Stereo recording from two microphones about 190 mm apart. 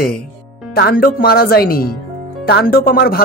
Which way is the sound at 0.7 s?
50° left (ahead or behind).